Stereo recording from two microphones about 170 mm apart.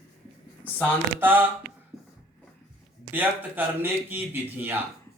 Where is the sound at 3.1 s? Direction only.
10° right (ahead or behind).